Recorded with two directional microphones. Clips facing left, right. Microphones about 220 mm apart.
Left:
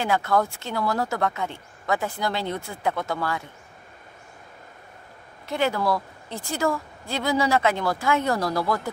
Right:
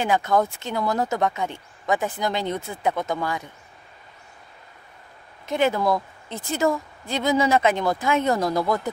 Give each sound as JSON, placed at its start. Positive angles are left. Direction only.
{"t": 0.0, "sound": "speech", "side_deg": -15}
{"t": 5.5, "sound": "a woman's voice", "side_deg": -20}